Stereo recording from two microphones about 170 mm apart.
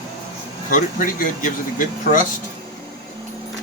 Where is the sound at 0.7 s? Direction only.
55° left (ahead or behind).